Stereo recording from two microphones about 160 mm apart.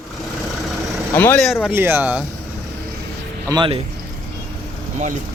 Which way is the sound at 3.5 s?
30° right (ahead or behind).